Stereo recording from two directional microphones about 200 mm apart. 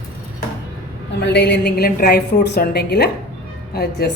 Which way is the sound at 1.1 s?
55° left (ahead or behind).